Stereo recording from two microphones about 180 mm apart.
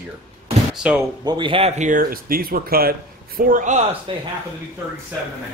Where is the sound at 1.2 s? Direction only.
25° right (ahead or behind); by 3.8 s 45° right (ahead or behind).